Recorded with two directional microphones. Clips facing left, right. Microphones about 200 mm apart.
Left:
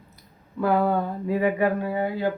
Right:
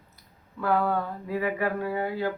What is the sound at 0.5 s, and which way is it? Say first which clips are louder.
A man's voice: left 4 dB; 15° left (ahead or behind).